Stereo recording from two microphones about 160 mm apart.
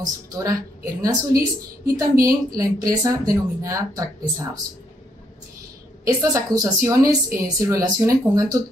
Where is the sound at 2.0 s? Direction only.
20° right (ahead or behind).